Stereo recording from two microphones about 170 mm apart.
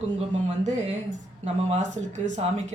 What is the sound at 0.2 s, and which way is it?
Speech, 40° right (ahead or behind).